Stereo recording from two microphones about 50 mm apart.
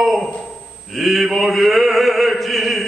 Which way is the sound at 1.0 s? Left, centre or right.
Centre.